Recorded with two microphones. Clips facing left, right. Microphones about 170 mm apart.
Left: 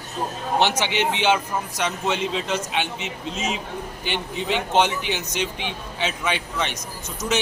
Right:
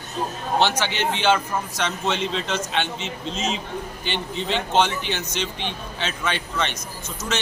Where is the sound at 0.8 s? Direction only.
15° left (ahead or behind).